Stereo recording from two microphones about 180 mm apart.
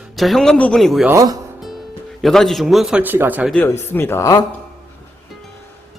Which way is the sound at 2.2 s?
Centre (ahead or behind).